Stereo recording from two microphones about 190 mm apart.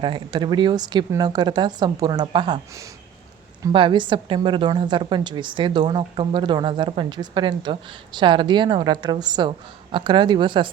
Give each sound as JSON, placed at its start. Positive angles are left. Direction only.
{"t": 0.0, "sound": "a woman's voice", "side_deg": -25}